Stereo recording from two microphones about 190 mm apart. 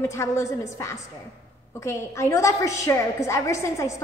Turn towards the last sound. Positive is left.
turn(degrees=15)  # may be behind; listen again after turning